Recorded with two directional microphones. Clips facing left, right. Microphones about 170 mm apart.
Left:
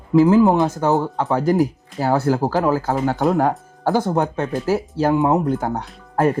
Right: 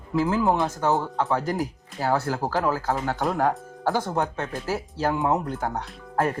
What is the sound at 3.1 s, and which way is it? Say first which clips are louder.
Speech: left 6 dB; 25° left (ahead or behind).